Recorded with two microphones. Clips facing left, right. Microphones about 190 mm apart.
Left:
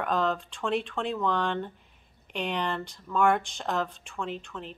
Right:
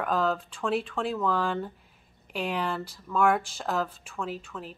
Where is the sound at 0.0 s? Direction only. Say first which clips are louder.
Right 1 dB; 5° right (ahead or behind).